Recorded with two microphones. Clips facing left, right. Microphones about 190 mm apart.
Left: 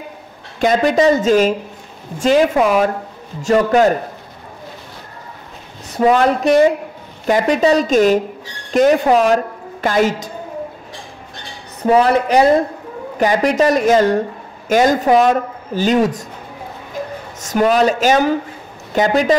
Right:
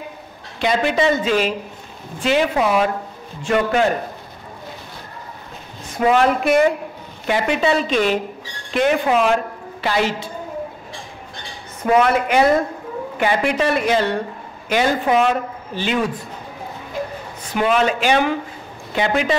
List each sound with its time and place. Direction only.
0.6 s speech: 45° left (ahead or behind)
5.9 s a woman's voice: 35° left (ahead or behind)
11.8 s speech: 35° left (ahead or behind)
17.4 s speech: 40° left (ahead or behind)